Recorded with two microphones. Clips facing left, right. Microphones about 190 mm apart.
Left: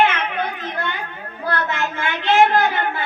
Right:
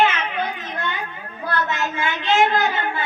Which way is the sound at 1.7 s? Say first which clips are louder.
Even; 55° left (ahead or behind).